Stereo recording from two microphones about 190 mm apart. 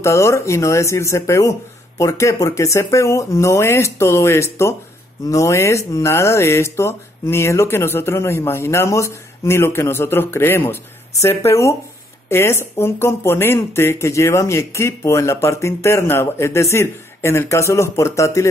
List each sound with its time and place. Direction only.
0.0 s speech: 15° left (ahead or behind)